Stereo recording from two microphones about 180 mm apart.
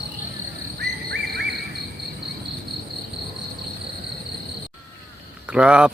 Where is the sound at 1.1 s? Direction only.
70° right (ahead or behind).